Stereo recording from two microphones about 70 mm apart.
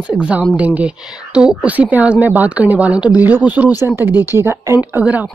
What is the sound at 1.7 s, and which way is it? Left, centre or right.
A woman's voice, right.